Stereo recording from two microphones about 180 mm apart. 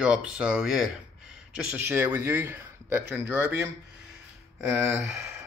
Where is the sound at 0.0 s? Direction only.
5° right (ahead or behind).